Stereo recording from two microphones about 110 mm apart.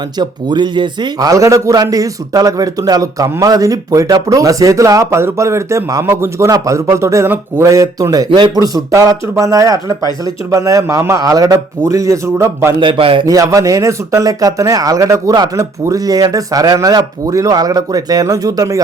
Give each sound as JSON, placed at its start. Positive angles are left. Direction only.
{"t": 0.2, "sound": "a man's voice", "side_deg": -40}
{"t": 12.8, "sound": "a man's voice", "side_deg": -50}
{"t": 13.2, "sound": "a man's voice", "side_deg": -30}